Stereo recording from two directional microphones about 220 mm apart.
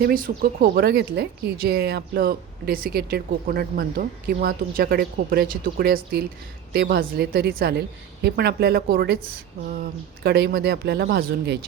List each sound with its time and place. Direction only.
0.0 s speech: 40° right (ahead or behind)